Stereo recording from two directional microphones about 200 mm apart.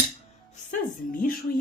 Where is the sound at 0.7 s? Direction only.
45° left (ahead or behind).